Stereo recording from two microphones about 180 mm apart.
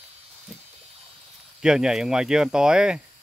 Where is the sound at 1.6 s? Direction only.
5° right (ahead or behind).